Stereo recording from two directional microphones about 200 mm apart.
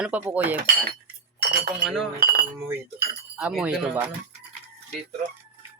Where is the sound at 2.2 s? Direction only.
45° right (ahead or behind).